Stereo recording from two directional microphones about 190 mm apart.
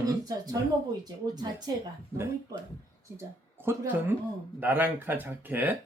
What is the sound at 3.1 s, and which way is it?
Speech, 10° right (ahead or behind).